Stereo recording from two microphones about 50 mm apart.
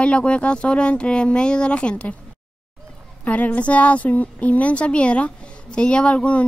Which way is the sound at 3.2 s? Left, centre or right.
Left.